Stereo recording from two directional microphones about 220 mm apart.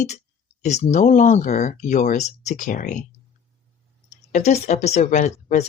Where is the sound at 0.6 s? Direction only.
30° left (ahead or behind).